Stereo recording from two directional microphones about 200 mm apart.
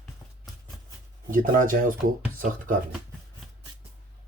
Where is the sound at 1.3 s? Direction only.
45° right (ahead or behind).